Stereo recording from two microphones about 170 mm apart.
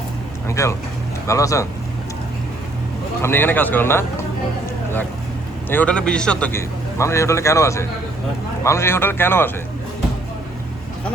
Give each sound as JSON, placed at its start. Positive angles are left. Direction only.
{"t": 0.4, "sound": "a man's voice", "side_deg": 15}
{"t": 3.2, "sound": "a man's voice", "side_deg": 15}
{"t": 5.6, "sound": "a man's voice", "side_deg": 10}